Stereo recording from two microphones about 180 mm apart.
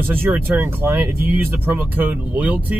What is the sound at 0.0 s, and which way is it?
Speech, 10° right (ahead or behind).